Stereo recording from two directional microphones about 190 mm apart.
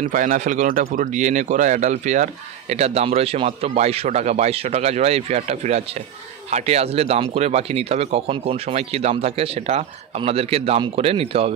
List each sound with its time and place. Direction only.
0.0 s speech: 45° right (ahead or behind)